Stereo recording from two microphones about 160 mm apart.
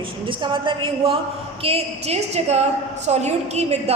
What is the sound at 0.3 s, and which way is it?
A woman's voice, 30° right (ahead or behind).